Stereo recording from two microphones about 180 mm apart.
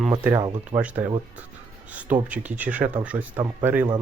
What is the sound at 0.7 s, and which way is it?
Speech, 25° right (ahead or behind).